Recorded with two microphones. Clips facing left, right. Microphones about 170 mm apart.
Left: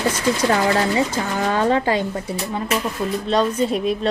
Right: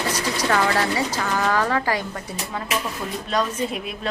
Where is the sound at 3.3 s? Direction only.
35° left (ahead or behind).